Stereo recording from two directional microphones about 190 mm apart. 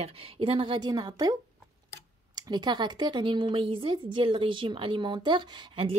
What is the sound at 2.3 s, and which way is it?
Speech, 20° right (ahead or behind).